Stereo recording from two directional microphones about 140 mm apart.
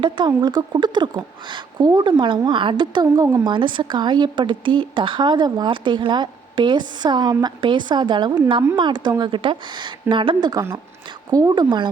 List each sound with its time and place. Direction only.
0.0 s a woman's voice: 30° right (ahead or behind)